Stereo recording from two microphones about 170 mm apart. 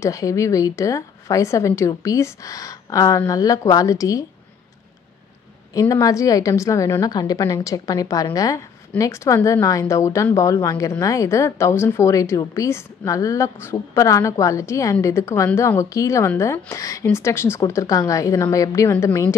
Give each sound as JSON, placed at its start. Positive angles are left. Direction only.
{"t": 0.0, "sound": "a woman's voice", "side_deg": 20}
{"t": 5.7, "sound": "a woman's voice", "side_deg": 20}